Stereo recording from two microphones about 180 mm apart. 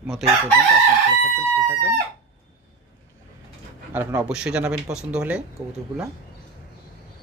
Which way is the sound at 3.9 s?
10° right (ahead or behind).